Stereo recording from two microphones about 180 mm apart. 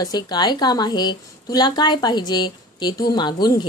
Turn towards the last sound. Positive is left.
turn(degrees=25)  # may be behind; listen again after turning